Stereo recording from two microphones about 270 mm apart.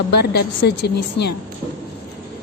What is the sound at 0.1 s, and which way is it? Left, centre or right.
A woman's voice, left.